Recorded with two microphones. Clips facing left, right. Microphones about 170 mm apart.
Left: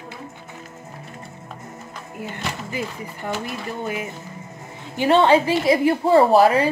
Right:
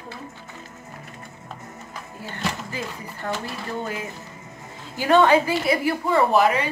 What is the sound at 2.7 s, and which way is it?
Speech, 15° left (ahead or behind).